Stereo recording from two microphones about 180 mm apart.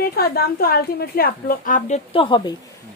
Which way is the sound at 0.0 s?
60° left (ahead or behind).